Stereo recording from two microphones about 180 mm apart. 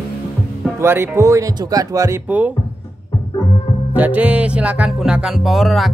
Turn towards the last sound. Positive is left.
turn(degrees=0)  # may be behind; listen again after turning